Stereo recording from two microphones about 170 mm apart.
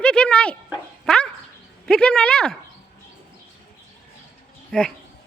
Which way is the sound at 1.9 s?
5° left (ahead or behind).